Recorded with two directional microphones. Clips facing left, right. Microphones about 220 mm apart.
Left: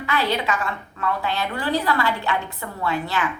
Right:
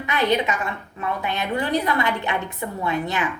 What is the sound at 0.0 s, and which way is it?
A woman's voice, 20° right (ahead or behind).